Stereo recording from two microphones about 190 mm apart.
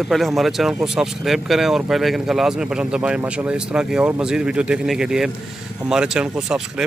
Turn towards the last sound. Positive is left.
turn(degrees=-5)  # may be behind; listen again after turning